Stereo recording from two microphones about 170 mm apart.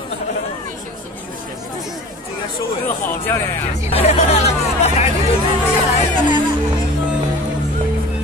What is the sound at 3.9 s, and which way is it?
Chatter, 40° left (ahead or behind).